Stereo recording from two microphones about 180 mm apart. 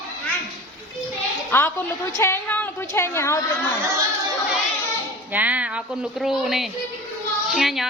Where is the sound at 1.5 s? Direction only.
10° left (ahead or behind).